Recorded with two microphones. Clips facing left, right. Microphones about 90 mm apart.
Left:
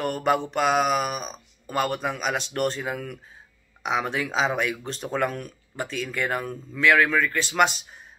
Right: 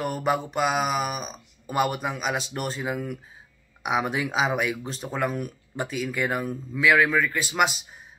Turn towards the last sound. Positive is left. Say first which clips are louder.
# left 2 dB
turn(degrees=-5)  # may be behind; listen again after turning